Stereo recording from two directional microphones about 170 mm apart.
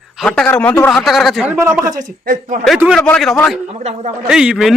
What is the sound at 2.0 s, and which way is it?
Speech, 50° right (ahead or behind).